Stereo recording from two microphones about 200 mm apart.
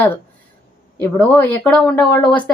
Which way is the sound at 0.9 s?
10° left (ahead or behind).